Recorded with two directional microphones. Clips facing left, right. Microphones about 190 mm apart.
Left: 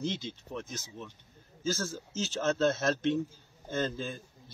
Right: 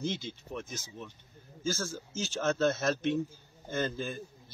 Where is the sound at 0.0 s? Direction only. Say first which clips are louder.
Even; 20° left (ahead or behind).